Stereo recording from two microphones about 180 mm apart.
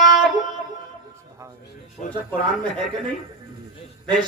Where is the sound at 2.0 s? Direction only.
45° left (ahead or behind).